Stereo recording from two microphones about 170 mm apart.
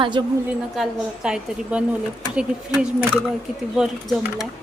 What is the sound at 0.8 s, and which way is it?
A woman's voice, 5° right (ahead or behind).